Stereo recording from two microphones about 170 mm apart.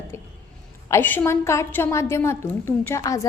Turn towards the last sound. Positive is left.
turn(degrees=20)  # may be behind; listen again after turning